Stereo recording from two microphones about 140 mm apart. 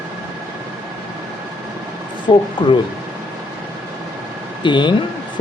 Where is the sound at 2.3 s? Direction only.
35° left (ahead or behind).